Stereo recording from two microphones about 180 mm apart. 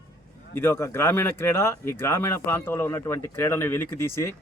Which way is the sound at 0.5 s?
10° left (ahead or behind).